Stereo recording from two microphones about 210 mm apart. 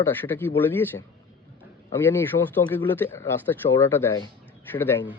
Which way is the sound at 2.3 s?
40° left (ahead or behind).